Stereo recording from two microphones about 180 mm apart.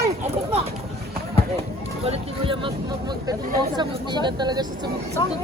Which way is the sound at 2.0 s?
30° right (ahead or behind).